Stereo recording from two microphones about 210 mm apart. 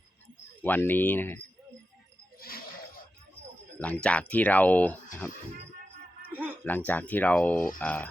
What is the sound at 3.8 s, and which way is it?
Speech, 5° left (ahead or behind).